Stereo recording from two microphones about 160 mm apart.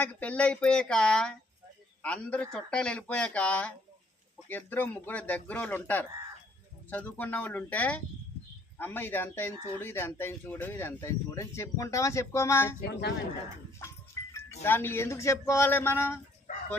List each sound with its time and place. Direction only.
0.0 s speech: 10° left (ahead or behind)
12.8 s a woman's voice: 90° left
13.8 s speech: 20° left (ahead or behind)